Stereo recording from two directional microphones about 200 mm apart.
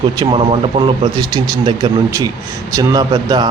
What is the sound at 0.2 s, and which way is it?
Speech, 25° right (ahead or behind).